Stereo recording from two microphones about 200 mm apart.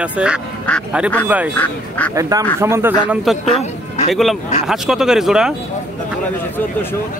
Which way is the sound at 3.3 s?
Centre (ahead or behind).